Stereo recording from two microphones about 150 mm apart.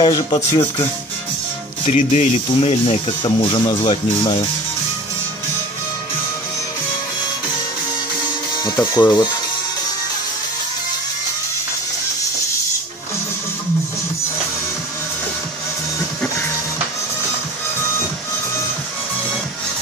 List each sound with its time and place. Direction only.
0.0 s speech: 25° left (ahead or behind)
1.9 s speech: 50° left (ahead or behind); by 4.5 s 30° left (ahead or behind)
8.7 s speech: 20° left (ahead or behind)